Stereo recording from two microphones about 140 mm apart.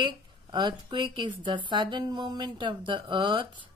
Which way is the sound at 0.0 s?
30° right (ahead or behind).